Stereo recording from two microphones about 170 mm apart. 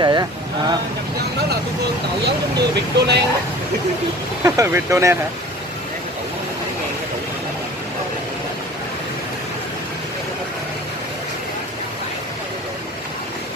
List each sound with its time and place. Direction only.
0.0 s speech: 25° right (ahead or behind)
2.2 s speech: 80° right
4.4 s speech: 15° right (ahead or behind)